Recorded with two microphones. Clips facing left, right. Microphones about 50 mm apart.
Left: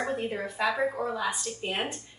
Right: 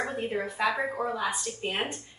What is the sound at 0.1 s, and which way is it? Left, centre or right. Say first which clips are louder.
A woman's voice: even; centre.